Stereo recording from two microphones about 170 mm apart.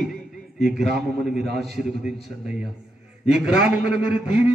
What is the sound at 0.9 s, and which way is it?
A man's voice, 5° right (ahead or behind).